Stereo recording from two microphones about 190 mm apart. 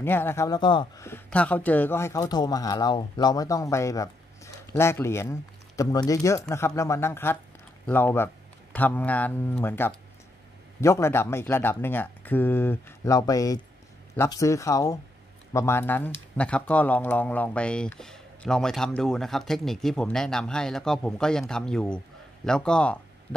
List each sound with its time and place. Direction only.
0.0 s speech: 10° left (ahead or behind)
1.0 s speech: 10° left (ahead or behind)